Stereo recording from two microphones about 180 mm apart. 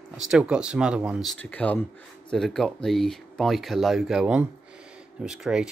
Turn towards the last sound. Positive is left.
turn(degrees=-5)  # may be behind; listen again after turning